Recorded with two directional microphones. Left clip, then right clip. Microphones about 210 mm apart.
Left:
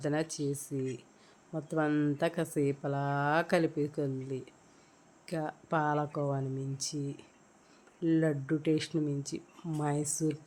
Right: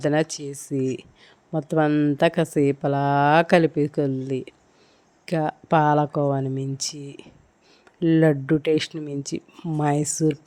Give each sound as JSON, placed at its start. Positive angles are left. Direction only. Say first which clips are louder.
{"t": 0.0, "sound": "speech", "louder": "right 10 dB", "side_deg": -30}